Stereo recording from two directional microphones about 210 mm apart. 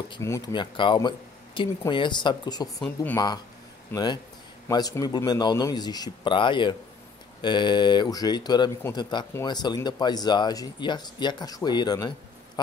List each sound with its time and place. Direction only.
0.1 s a man's voice: 15° left (ahead or behind)
2.8 s speech: 10° left (ahead or behind)
3.9 s a man's voice: 20° left (ahead or behind)